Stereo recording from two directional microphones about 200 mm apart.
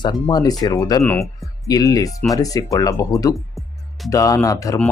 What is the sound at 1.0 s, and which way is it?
Speech, 5° left (ahead or behind).